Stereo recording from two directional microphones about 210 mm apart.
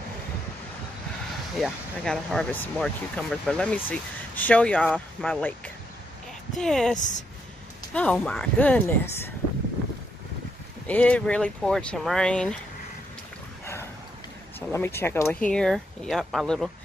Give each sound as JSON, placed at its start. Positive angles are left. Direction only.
{"t": 1.6, "sound": "speech", "side_deg": 5}
{"t": 6.5, "sound": "speech", "side_deg": 0}
{"t": 7.0, "sound": "speech", "side_deg": 35}
{"t": 7.9, "sound": "speech", "side_deg": 5}
{"t": 10.9, "sound": "speech", "side_deg": 5}
{"t": 14.7, "sound": "speech", "side_deg": 10}